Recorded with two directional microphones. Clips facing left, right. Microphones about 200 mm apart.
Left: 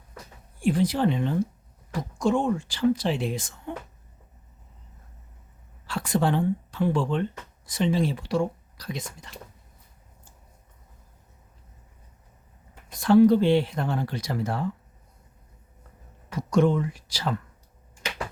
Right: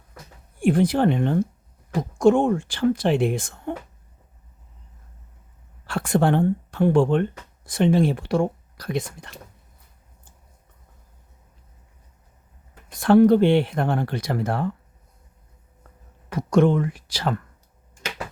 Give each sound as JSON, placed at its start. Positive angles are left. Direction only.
{"t": 0.6, "sound": "speech", "side_deg": -55}
{"t": 5.8, "sound": "speech", "side_deg": -55}
{"t": 13.0, "sound": "speech", "side_deg": -60}
{"t": 16.3, "sound": "speech", "side_deg": -60}